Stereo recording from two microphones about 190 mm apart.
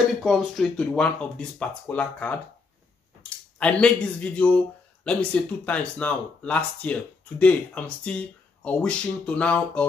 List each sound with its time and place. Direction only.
0.2 s speech: centre (ahead or behind)